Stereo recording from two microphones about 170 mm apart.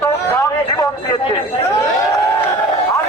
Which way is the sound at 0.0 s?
15° left (ahead or behind).